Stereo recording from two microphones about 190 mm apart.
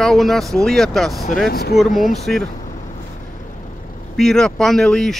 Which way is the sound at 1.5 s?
55° left (ahead or behind).